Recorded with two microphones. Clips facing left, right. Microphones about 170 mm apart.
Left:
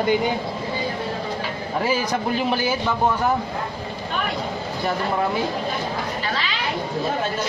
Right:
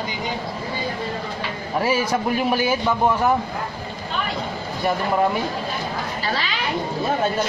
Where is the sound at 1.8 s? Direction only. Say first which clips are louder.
Right 2 dB; 5° right (ahead or behind).